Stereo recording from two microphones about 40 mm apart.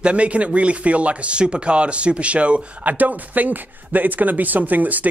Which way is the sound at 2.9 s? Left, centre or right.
Right.